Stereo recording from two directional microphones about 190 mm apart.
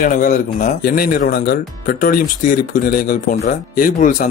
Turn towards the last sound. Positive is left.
turn(degrees=45)  # may be behind; listen again after turning